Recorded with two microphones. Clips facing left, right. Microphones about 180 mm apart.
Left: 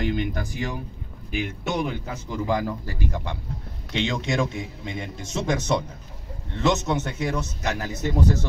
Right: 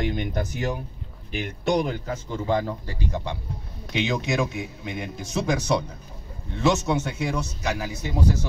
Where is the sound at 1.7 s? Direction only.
35° right (ahead or behind).